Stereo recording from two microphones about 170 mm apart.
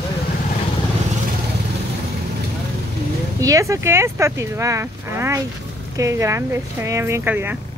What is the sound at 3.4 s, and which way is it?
Speech, 20° right (ahead or behind).